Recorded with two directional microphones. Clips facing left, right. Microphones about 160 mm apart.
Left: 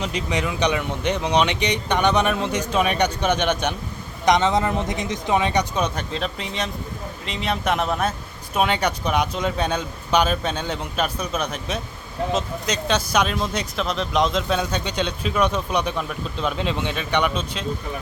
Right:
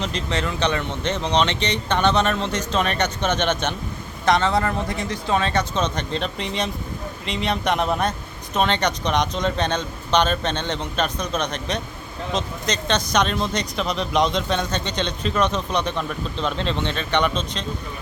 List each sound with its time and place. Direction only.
0.0 s speech: 10° left (ahead or behind)